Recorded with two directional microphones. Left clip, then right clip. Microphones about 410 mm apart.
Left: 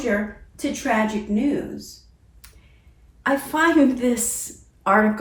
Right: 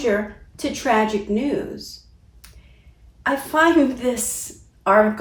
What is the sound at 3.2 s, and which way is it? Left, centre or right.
Speech, centre.